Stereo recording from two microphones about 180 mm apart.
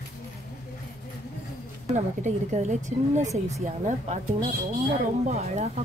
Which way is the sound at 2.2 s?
40° right (ahead or behind).